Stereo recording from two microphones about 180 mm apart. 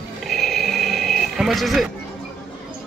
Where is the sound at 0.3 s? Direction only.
Centre (ahead or behind).